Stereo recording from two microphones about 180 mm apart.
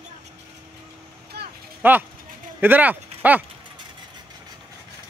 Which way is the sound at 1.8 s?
10° right (ahead or behind).